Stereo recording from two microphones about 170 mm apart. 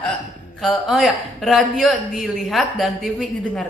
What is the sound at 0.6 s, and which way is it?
Speech, centre (ahead or behind).